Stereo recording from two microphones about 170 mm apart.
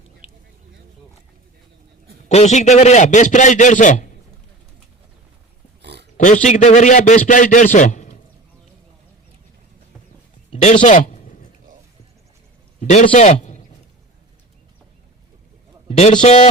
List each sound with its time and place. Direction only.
2.3 s a man's voice: 40° left (ahead or behind)
5.8 s pig: 80° right
6.1 s a man's voice: 45° left (ahead or behind)
10.5 s a sound: 40° left (ahead or behind)
12.8 s a man's voice: 45° left (ahead or behind)
15.9 s a man's voice: 40° left (ahead or behind)